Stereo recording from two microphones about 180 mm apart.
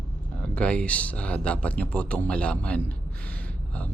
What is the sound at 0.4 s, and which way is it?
Speech, 5° left (ahead or behind).